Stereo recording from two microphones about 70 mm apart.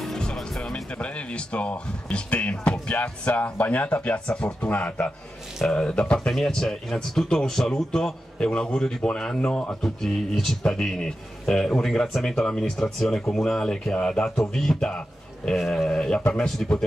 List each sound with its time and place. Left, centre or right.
0.0 s speech: centre